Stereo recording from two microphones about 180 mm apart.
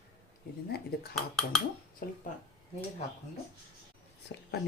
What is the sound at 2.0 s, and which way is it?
Speech, 50° left (ahead or behind).